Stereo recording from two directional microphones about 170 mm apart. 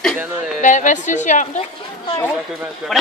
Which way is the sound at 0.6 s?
50° left (ahead or behind).